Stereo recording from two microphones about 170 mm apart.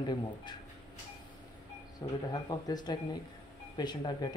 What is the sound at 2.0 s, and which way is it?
Speech, 25° left (ahead or behind).